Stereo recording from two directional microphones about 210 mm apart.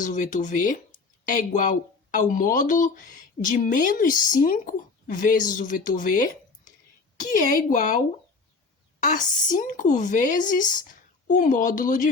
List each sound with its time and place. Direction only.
0.0 s speech: 35° left (ahead or behind)
9.0 s speech: 35° left (ahead or behind)